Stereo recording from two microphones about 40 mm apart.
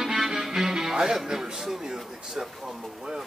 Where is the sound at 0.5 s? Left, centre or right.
Centre.